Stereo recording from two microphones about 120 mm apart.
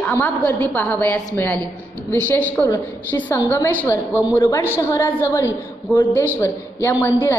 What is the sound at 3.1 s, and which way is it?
A woman's voice, 25° left (ahead or behind).